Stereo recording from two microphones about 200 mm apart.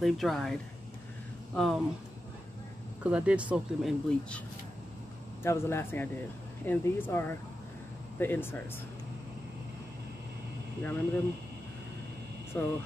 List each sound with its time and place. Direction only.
0.0 s speech: centre (ahead or behind)
3.0 s speech: 5° right (ahead or behind)
5.4 s speech: 10° left (ahead or behind)
10.8 s speech: 10° left (ahead or behind)
12.6 s speech: 10° left (ahead or behind)